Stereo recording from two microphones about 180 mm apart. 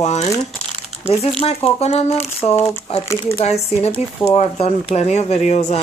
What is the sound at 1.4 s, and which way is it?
Speech, 35° left (ahead or behind).